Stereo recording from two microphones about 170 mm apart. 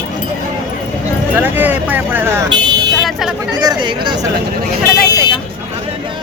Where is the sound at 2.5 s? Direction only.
25° right (ahead or behind).